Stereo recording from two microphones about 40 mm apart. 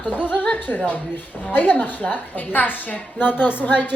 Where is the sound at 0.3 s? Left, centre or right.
Left.